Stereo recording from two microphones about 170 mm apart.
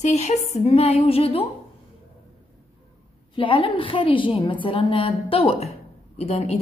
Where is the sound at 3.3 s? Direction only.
30° left (ahead or behind).